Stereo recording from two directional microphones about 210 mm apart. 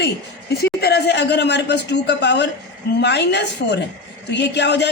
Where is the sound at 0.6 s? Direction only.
50° left (ahead or behind).